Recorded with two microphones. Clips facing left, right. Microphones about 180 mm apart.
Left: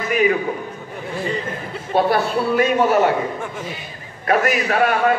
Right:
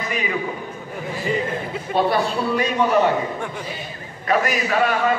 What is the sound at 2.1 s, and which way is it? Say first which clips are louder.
Speech: left 3 dB; 50° left (ahead or behind).